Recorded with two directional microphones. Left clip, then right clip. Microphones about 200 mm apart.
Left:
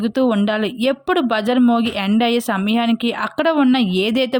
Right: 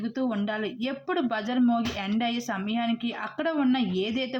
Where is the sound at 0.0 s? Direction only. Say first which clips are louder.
Left 12 dB; 50° left (ahead or behind).